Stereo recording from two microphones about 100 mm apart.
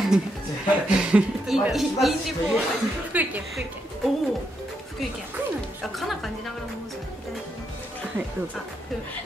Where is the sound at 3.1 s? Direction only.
15° right (ahead or behind).